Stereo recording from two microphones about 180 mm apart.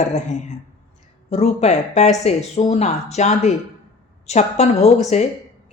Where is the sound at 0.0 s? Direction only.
40° left (ahead or behind).